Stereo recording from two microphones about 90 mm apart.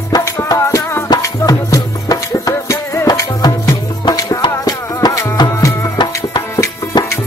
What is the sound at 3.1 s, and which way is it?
Music, 50° left (ahead or behind).